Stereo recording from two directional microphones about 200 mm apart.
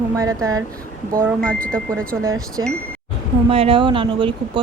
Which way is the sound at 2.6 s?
85° right.